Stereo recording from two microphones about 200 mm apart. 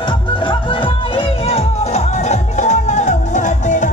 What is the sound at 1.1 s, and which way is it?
Music, 30° left (ahead or behind).